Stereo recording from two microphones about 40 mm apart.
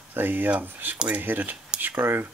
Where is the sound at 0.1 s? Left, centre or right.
Right.